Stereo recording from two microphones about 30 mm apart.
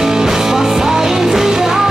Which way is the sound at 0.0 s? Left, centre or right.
Centre.